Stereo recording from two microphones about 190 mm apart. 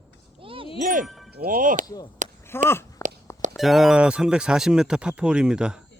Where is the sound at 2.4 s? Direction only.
10° left (ahead or behind).